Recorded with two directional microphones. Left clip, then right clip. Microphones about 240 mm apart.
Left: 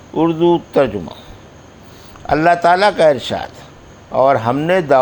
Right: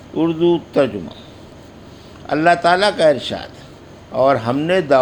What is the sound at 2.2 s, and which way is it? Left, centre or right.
A man's voice, left.